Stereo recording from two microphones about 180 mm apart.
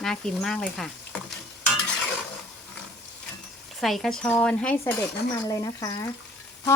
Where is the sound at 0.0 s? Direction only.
5° left (ahead or behind).